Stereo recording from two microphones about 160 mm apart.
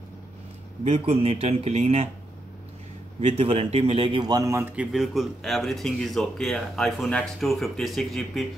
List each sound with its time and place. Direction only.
0.8 s a man's voice: 40° right (ahead or behind)
3.2 s a man's voice: 45° right (ahead or behind); by 4.8 s 15° right (ahead or behind)
4.9 s speech: centre (ahead or behind)